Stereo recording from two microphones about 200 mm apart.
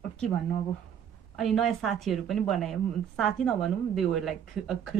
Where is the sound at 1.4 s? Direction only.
Centre (ahead or behind).